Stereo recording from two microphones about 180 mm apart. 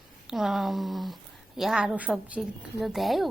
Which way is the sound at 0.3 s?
Centre (ahead or behind).